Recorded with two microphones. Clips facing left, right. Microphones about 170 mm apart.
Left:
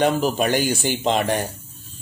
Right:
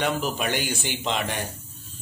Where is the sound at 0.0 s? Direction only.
40° left (ahead or behind).